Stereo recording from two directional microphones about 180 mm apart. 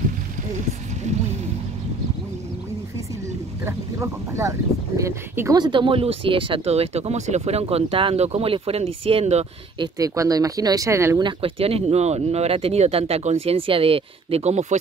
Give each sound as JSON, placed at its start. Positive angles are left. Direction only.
{"t": 3.6, "sound": "speech", "side_deg": -15}
{"t": 5.6, "sound": "speech", "side_deg": -25}
{"t": 9.9, "sound": "speech", "side_deg": -20}
{"t": 11.2, "sound": "speech", "side_deg": -30}